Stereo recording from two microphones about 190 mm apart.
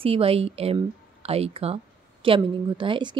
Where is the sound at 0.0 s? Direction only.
30° right (ahead or behind).